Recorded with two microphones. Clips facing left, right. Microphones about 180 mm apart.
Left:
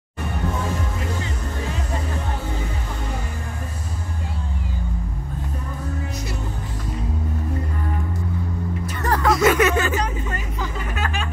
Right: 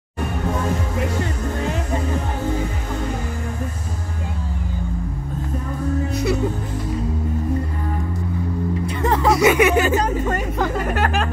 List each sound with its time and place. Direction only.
8.8 s music: 25° right (ahead or behind)
9.3 s a sound: 10° right (ahead or behind)
9.9 s music: 50° right (ahead or behind)